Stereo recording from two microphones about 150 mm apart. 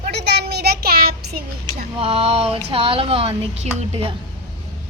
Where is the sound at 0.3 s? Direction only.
90° right.